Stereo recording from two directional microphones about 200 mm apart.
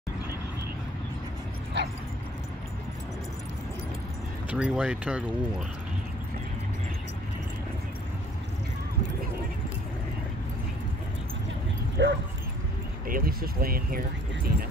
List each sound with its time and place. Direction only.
1.8 s dog: 65° right (ahead or behind)
4.5 s speech: 5° right (ahead or behind)
12.0 s speech: 60° right (ahead or behind)
13.0 s speech: 45° right (ahead or behind)